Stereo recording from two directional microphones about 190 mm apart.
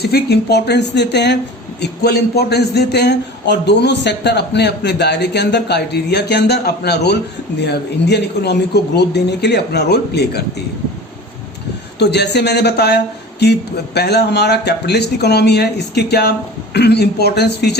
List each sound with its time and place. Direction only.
0.0 s a man's voice: 60° left (ahead or behind)
11.9 s a man's voice: 60° left (ahead or behind)